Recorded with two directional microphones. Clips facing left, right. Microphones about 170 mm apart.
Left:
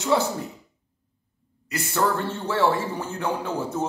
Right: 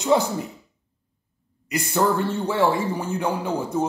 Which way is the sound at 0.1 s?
20° right (ahead or behind).